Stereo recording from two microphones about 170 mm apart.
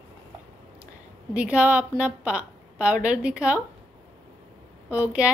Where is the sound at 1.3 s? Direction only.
5° right (ahead or behind).